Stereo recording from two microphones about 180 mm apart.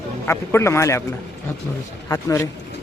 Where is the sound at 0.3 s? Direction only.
15° left (ahead or behind).